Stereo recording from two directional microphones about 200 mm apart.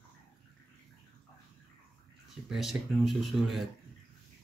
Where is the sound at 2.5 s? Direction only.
Centre (ahead or behind).